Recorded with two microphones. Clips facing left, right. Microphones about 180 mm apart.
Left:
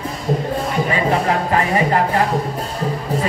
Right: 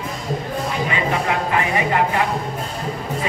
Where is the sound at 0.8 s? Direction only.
40° left (ahead or behind).